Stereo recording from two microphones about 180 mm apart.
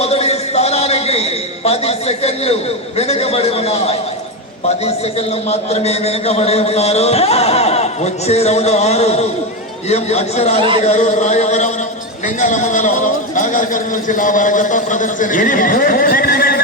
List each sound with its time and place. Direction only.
0.0 s a sound: 35° left (ahead or behind)
4.8 s a man's voice: 35° left (ahead or behind)
10.6 s speech: 30° right (ahead or behind)
10.8 s a man's voice: 40° left (ahead or behind)